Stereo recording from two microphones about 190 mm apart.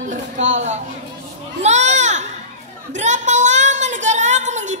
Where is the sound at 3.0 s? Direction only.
40° right (ahead or behind).